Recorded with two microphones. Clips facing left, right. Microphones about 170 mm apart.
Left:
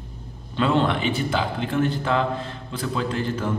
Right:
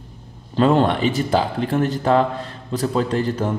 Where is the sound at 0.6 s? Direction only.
40° right (ahead or behind).